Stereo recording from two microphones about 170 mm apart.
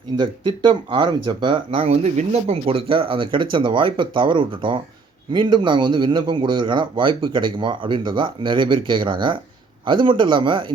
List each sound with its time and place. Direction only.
0.2 s speech: 30° right (ahead or behind)